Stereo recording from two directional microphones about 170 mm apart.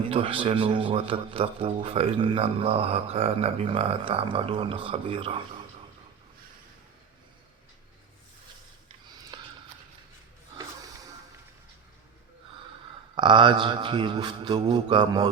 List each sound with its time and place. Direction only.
0.1 s speech: 35° right (ahead or behind)
9.3 s a sound: 25° right (ahead or behind)
13.1 s a man's voice: 30° right (ahead or behind)